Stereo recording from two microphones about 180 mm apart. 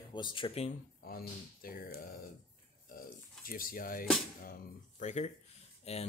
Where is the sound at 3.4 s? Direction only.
55° left (ahead or behind); by 6.0 s 35° left (ahead or behind).